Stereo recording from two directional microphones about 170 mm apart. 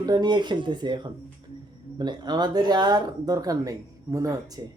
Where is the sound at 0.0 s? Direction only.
25° right (ahead or behind).